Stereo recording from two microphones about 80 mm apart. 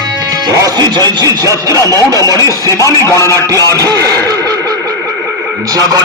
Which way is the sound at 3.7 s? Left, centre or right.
Right.